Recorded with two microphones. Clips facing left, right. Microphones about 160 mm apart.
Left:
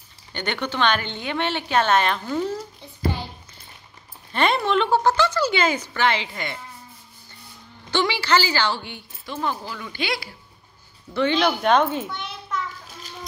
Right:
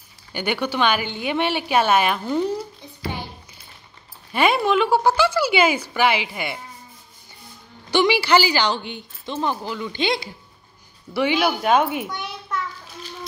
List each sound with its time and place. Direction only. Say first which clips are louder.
0.3 s a woman's voice: right 3 dB; 10° right (ahead or behind)
4.3 s a woman's voice: right 2 dB; 10° right (ahead or behind)
7.9 s a woman's voice: right 4 dB; 15° right (ahead or behind)
11.1 s a woman's voice: even; 10° right (ahead or behind)